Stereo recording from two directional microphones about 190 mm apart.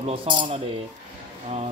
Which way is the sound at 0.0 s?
30° right (ahead or behind).